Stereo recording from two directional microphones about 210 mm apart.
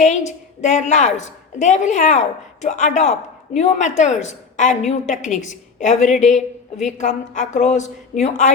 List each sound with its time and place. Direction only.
0.6 s a woman's voice: 35° left (ahead or behind)